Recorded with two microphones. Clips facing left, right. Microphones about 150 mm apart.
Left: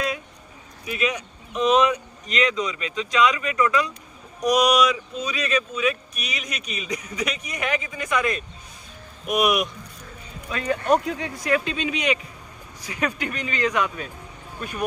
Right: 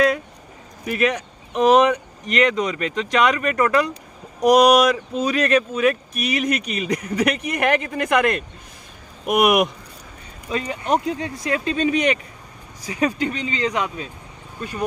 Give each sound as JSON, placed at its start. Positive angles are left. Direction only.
{"t": 0.8, "sound": "speech", "side_deg": -60}
{"t": 10.5, "sound": "speech", "side_deg": -20}
{"t": 11.7, "sound": "speech", "side_deg": -45}
{"t": 12.8, "sound": "speech", "side_deg": -30}